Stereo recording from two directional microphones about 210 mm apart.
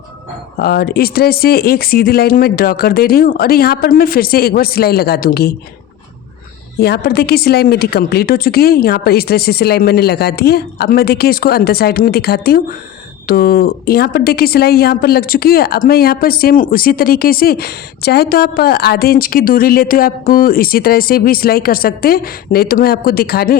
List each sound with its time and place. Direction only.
0.5 s a woman's voice: 45° left (ahead or behind)
6.7 s a woman's voice: 50° left (ahead or behind)